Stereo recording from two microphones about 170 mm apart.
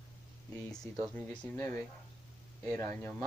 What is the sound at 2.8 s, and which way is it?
Speech, 15° left (ahead or behind).